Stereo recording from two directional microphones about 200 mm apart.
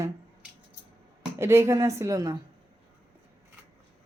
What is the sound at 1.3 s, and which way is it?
Speech, 15° right (ahead or behind).